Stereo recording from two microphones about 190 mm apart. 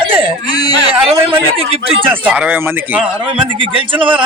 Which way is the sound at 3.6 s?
25° right (ahead or behind).